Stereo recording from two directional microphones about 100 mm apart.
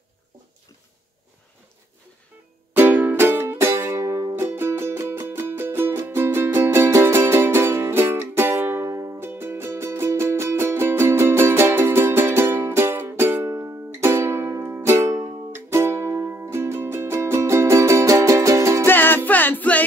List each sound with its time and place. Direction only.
2.7 s music: 15° right (ahead or behind)
18.9 s music: 20° left (ahead or behind)